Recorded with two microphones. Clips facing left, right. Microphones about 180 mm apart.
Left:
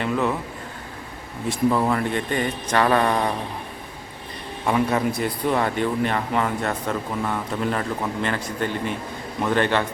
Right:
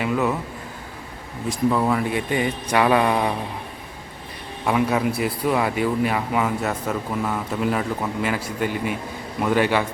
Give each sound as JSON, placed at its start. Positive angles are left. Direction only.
{"t": 0.0, "sound": "speech", "side_deg": -5}
{"t": 1.5, "sound": "a man's voice", "side_deg": 0}
{"t": 4.6, "sound": "a man's voice", "side_deg": -5}